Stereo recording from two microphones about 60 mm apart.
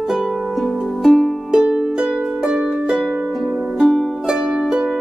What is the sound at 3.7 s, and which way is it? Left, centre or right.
Music, centre.